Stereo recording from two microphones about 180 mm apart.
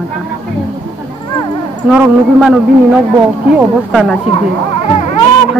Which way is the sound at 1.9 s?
5° right (ahead or behind).